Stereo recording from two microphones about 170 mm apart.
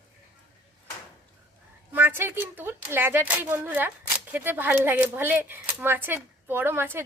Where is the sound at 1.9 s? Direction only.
10° right (ahead or behind).